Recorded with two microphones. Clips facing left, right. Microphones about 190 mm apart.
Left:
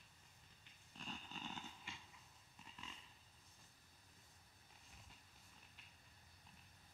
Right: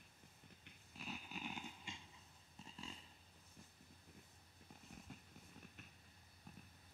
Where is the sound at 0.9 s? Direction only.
10° right (ahead or behind).